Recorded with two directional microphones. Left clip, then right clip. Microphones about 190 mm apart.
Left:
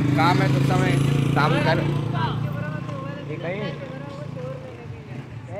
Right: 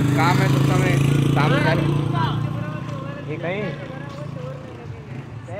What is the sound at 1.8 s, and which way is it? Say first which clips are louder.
Speech: right 3 dB; 25° right (ahead or behind).